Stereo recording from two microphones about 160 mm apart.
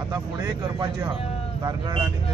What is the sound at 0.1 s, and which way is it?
Speech, 25° right (ahead or behind).